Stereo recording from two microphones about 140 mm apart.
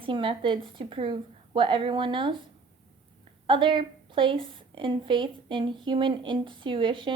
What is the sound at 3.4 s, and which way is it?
A woman's voice, 35° right (ahead or behind).